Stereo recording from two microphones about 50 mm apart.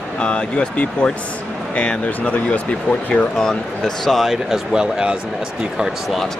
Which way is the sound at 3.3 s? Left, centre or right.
Centre.